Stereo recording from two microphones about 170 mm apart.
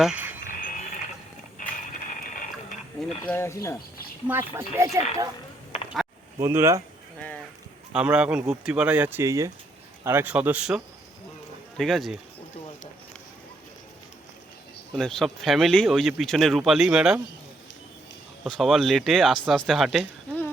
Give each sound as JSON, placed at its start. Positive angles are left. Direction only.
{"t": 0.0, "sound": "cricket", "side_deg": -10}
{"t": 0.4, "sound": "mechanisms", "side_deg": 55}
{"t": 3.2, "sound": "speech", "side_deg": 15}
{"t": 4.3, "sound": "speech", "side_deg": -15}
{"t": 6.4, "sound": "speech", "side_deg": -15}
{"t": 7.2, "sound": "a sound", "side_deg": 10}
{"t": 7.9, "sound": "speech", "side_deg": -5}
{"t": 14.9, "sound": "speech", "side_deg": 0}
{"t": 18.4, "sound": "speech", "side_deg": 0}